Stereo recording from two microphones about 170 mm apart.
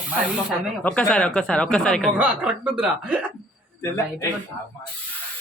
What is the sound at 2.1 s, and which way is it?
Speech, 10° right (ahead or behind).